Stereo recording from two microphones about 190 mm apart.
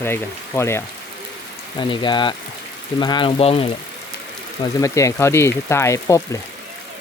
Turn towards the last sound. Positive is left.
turn(degrees=15)  # may be behind; listen again after turning